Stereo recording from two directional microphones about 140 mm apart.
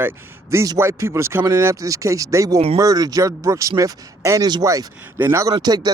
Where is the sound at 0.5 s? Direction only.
20° right (ahead or behind).